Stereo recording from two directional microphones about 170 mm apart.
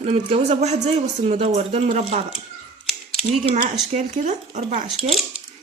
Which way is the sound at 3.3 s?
45° right (ahead or behind).